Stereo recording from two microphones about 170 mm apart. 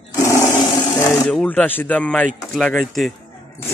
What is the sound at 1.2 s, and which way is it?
Speech, 5° left (ahead or behind).